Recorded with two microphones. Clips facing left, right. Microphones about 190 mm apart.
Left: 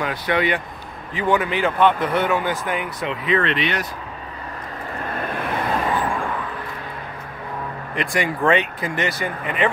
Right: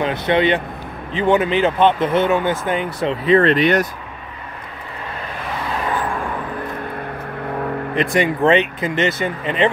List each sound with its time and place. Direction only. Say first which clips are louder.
0.0 s speech: right 5 dB; 25° right (ahead or behind); by 3.8 s 45° right (ahead or behind)
7.9 s speech: right 4 dB; 20° right (ahead or behind)